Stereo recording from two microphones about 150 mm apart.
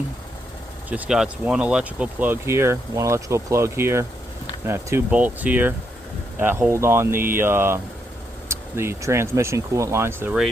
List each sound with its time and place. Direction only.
0.9 s speech: 10° right (ahead or behind)